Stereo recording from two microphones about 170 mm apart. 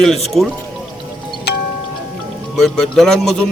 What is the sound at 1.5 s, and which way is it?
Music, 75° left (ahead or behind).